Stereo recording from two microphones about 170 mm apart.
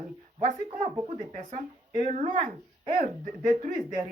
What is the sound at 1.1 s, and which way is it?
Speech, 40° right (ahead or behind).